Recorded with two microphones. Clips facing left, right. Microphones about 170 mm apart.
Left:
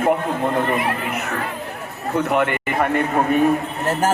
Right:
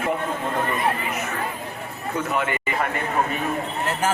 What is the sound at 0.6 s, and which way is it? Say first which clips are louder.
Speech: left 3 dB; 60° left (ahead or behind).